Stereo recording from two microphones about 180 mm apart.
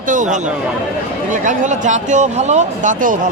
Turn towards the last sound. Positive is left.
turn(degrees=-45)  # may be behind; listen again after turning